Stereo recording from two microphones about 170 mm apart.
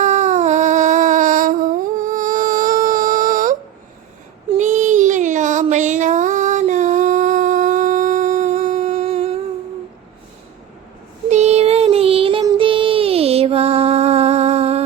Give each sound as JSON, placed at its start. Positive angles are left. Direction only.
{"t": 0.0, "sound": "a sound", "side_deg": -45}
{"t": 4.5, "sound": "child singing", "side_deg": -45}
{"t": 11.3, "sound": "child singing", "side_deg": -40}